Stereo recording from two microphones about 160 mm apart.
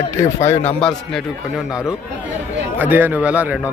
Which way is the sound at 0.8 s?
Centre (ahead or behind).